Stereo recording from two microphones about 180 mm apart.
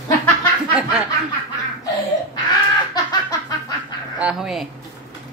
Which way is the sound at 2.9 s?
20° left (ahead or behind).